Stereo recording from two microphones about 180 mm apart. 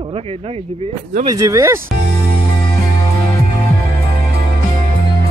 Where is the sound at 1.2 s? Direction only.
20° right (ahead or behind).